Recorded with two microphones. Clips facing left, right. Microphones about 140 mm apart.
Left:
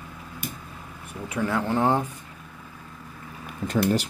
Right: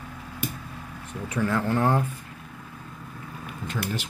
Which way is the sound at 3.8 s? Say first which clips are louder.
Left 9 dB; 40° left (ahead or behind).